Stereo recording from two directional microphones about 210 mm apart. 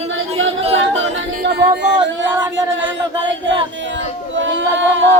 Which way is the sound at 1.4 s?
55° right (ahead or behind).